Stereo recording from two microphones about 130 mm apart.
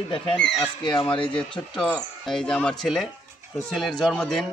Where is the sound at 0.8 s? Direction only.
35° left (ahead or behind).